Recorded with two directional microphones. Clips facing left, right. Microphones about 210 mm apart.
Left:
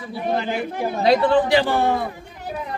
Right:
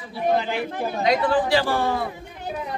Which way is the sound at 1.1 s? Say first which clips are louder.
Left 4 dB; 20° left (ahead or behind).